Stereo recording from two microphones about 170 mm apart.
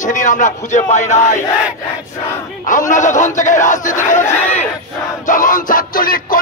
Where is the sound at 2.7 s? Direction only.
50° left (ahead or behind).